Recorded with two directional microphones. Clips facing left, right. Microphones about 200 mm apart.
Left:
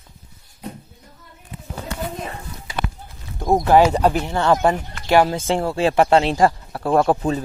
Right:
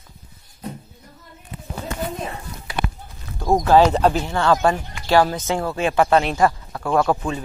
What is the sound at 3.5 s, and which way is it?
Speech, 15° left (ahead or behind).